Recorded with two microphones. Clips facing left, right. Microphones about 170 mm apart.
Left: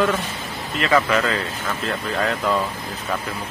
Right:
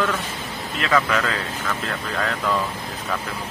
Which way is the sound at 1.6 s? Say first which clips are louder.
Left 2 dB; 20° left (ahead or behind).